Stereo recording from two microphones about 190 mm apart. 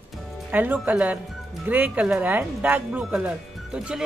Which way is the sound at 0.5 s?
10° right (ahead or behind).